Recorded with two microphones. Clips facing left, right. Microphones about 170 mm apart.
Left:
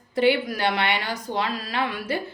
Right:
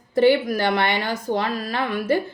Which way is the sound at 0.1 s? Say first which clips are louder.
Right 4 dB; 45° right (ahead or behind).